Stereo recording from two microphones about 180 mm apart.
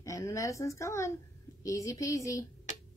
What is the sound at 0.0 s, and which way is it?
Speech, 15° left (ahead or behind).